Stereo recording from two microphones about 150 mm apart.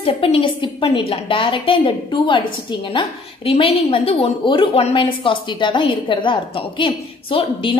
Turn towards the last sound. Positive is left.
turn(degrees=35)  # may be behind; listen again after turning